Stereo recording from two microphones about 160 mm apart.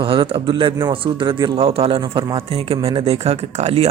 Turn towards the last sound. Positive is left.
turn(degrees=-40)  # may be behind; listen again after turning